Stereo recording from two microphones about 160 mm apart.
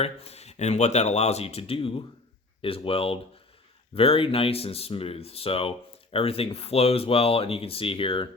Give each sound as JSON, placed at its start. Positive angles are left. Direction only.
{"t": 0.0, "sound": "speech", "side_deg": 40}